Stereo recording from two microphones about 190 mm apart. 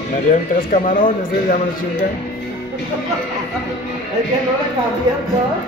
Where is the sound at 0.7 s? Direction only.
45° left (ahead or behind).